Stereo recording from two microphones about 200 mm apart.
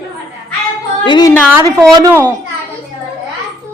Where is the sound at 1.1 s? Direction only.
20° left (ahead or behind).